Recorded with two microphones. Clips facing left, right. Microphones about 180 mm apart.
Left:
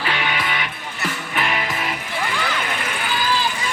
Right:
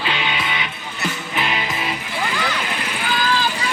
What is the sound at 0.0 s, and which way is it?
Music, 20° right (ahead or behind).